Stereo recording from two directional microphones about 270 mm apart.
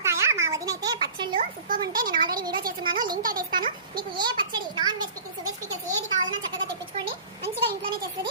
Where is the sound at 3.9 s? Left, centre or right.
Centre.